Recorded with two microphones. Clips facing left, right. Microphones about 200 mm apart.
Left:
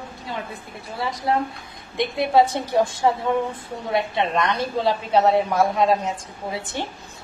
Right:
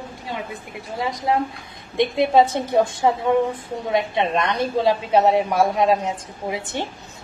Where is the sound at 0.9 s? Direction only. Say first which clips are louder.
Right 1 dB; 15° right (ahead or behind).